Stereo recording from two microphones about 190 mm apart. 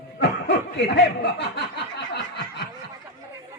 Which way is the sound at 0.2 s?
65° left (ahead or behind).